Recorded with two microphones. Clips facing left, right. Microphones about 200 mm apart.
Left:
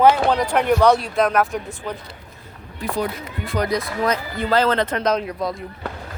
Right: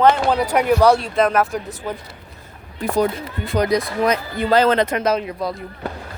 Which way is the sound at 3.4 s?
15° right (ahead or behind).